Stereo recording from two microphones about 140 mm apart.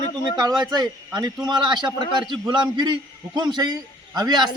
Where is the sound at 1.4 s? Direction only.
30° right (ahead or behind).